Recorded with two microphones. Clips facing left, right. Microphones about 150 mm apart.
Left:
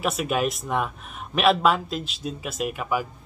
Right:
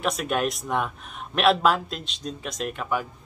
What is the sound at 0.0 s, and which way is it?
A man's voice, 5° left (ahead or behind).